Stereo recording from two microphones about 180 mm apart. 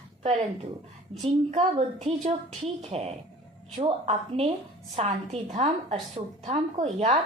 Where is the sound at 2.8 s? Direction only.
35° right (ahead or behind).